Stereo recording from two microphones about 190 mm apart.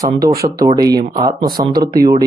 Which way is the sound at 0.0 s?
20° right (ahead or behind).